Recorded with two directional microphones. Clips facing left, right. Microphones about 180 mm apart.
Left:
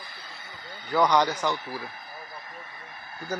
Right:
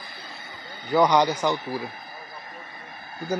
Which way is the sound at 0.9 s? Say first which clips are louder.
Right 3 dB; 10° right (ahead or behind).